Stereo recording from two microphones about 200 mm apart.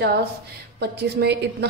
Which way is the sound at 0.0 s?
50° right (ahead or behind).